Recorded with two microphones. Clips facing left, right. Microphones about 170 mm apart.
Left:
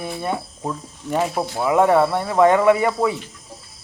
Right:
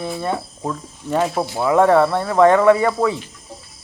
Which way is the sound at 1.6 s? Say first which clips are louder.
Right 2 dB; 15° left (ahead or behind).